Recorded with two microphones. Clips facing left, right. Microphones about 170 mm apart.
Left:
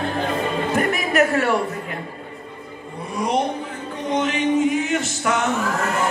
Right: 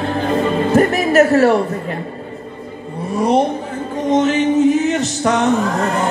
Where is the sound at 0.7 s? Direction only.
40° right (ahead or behind).